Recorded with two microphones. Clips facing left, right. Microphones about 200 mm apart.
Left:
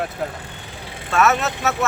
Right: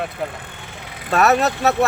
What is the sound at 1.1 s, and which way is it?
Speech, 40° right (ahead or behind).